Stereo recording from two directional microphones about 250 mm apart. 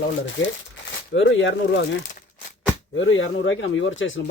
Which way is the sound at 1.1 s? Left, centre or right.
Left.